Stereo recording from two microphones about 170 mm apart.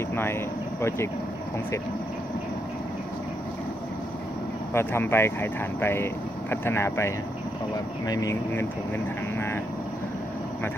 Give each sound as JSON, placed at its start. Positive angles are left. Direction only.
{"t": 0.1, "sound": "speech", "side_deg": 15}
{"t": 4.7, "sound": "speech", "side_deg": 15}